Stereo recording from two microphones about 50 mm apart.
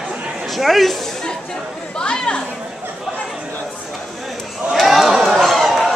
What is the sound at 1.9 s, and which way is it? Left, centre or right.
Chatter, centre.